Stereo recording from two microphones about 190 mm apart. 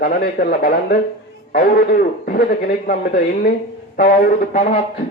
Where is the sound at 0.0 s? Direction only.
50° left (ahead or behind).